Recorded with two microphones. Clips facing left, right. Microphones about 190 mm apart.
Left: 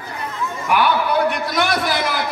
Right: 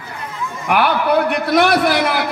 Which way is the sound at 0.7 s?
60° right (ahead or behind).